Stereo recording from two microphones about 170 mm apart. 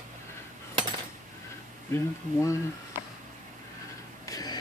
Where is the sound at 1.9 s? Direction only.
15° left (ahead or behind).